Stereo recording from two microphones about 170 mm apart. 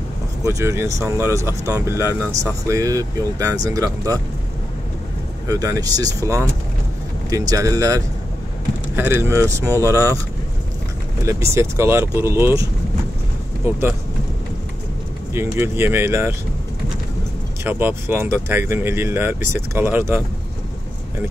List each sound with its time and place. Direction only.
0.5 s speech: 20° right (ahead or behind)
5.5 s speech: 20° right (ahead or behind)
11.2 s speech: 15° right (ahead or behind)
13.7 s speech: 10° right (ahead or behind)
15.3 s speech: 15° right (ahead or behind)
17.6 s speech: 15° right (ahead or behind)